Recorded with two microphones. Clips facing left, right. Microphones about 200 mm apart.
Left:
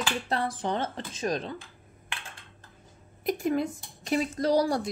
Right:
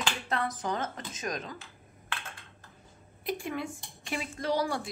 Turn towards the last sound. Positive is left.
turn(degrees=40)  # may be behind; listen again after turning